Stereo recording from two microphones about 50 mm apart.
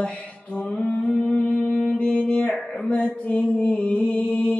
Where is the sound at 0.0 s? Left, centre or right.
Left.